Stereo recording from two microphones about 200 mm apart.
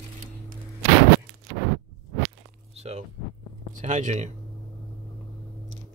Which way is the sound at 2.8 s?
30° right (ahead or behind).